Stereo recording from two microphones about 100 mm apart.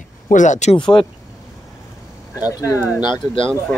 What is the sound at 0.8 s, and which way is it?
Speech, 50° left (ahead or behind).